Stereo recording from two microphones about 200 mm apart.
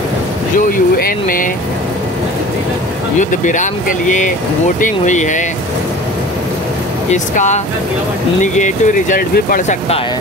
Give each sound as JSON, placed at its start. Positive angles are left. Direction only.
{"t": 0.6, "sound": "speech", "side_deg": 45}
{"t": 3.2, "sound": "speech", "side_deg": 40}
{"t": 4.7, "sound": "speech", "side_deg": 40}
{"t": 7.1, "sound": "speech", "side_deg": 35}